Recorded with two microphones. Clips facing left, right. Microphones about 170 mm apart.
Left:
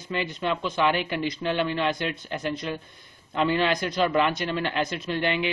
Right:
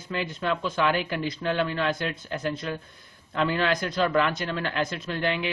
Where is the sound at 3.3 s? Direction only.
Centre (ahead or behind).